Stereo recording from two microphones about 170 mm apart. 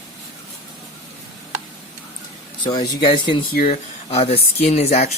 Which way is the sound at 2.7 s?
25° left (ahead or behind).